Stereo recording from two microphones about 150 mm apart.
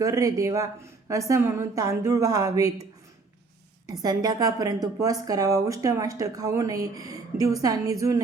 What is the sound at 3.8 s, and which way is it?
A woman's voice, 25° right (ahead or behind).